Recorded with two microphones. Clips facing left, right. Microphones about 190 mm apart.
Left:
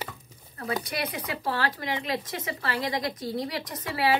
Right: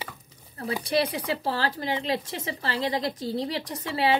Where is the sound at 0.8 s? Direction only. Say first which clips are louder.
Right 7 dB; 30° right (ahead or behind).